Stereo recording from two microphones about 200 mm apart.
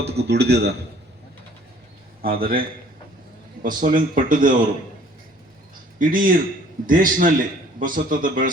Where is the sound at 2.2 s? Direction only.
45° right (ahead or behind).